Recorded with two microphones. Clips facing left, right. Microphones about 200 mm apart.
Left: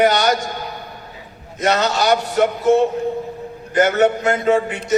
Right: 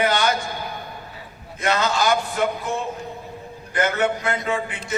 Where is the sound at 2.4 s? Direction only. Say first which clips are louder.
Left 9 dB; 75° left (ahead or behind).